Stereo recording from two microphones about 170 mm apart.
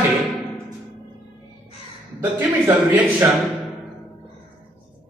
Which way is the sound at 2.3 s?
10° right (ahead or behind).